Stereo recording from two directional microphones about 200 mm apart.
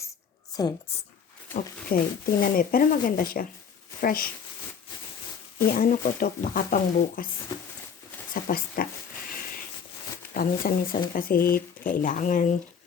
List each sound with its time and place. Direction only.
0.5 s speech: 20° left (ahead or behind)
1.9 s speech: 45° left (ahead or behind)
5.6 s speech: 45° left (ahead or behind)
8.3 s speech: 45° left (ahead or behind)
10.3 s speech: 45° left (ahead or behind)